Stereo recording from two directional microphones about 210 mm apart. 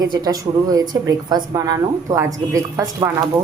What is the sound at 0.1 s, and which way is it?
A woman's voice, 15° right (ahead or behind).